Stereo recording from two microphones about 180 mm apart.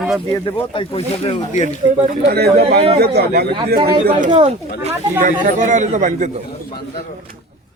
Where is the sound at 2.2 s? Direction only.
60° right (ahead or behind).